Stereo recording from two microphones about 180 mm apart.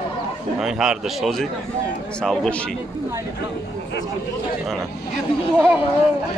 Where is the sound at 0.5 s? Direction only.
Centre (ahead or behind).